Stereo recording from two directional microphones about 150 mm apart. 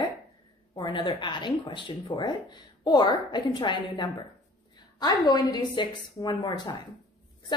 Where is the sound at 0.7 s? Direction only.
30° left (ahead or behind).